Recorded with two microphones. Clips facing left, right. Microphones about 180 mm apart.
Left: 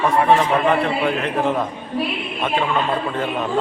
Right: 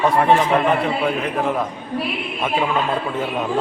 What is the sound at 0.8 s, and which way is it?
Speech, 5° right (ahead or behind).